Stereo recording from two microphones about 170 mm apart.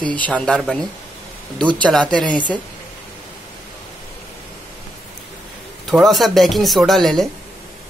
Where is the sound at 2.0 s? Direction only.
25° right (ahead or behind).